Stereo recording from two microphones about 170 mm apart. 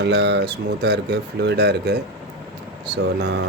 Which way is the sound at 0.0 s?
85° right.